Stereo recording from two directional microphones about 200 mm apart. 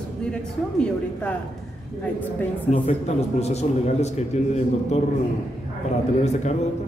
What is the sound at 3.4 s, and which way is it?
A man's voice, 30° left (ahead or behind).